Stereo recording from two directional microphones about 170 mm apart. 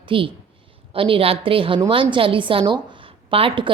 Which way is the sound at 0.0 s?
30° right (ahead or behind).